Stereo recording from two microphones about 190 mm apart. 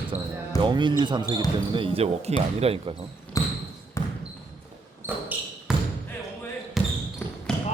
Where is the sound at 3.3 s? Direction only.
15° left (ahead or behind).